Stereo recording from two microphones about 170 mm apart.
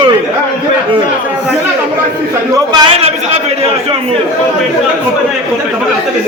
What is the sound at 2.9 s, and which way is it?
Speech, 35° right (ahead or behind).